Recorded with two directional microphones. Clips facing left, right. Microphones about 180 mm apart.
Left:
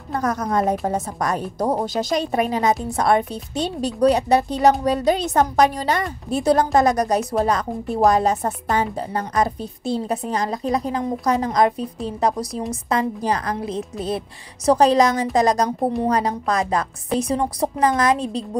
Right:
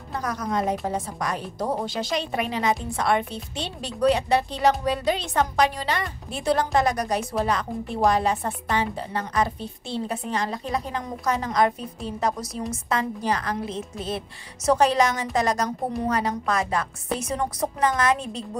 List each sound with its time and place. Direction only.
0.1 s a woman's voice: 45° left (ahead or behind)